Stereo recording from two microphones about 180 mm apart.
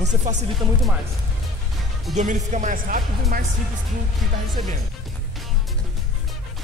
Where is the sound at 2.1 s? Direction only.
40° right (ahead or behind).